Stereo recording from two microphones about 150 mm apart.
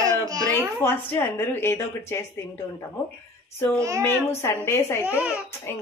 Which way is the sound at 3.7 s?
20° right (ahead or behind).